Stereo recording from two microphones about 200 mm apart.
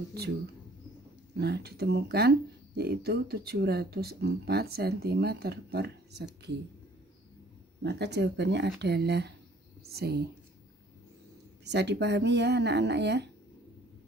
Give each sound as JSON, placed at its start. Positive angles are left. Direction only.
{"t": 1.4, "sound": "speech", "side_deg": -55}
{"t": 7.8, "sound": "speech", "side_deg": -60}
{"t": 11.6, "sound": "speech", "side_deg": -60}